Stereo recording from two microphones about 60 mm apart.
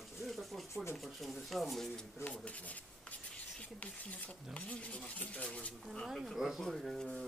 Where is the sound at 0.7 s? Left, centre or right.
Left.